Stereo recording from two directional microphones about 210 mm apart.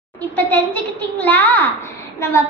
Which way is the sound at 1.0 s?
10° left (ahead or behind).